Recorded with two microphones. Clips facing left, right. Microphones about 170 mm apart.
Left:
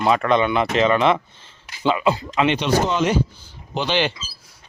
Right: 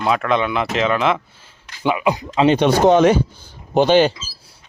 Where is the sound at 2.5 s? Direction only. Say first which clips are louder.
Right 7 dB; 55° right (ahead or behind).